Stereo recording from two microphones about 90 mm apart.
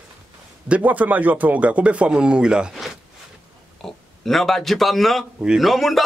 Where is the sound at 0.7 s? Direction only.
15° right (ahead or behind).